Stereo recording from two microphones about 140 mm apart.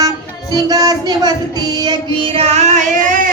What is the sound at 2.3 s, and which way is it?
Female singing, 50° right (ahead or behind).